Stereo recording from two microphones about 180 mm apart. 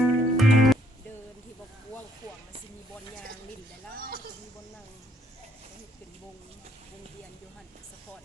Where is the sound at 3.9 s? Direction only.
55° right (ahead or behind).